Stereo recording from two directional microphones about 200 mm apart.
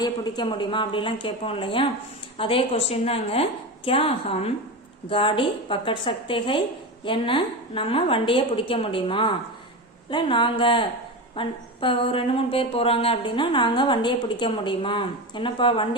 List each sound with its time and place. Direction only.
0.0 s speech: 20° left (ahead or behind)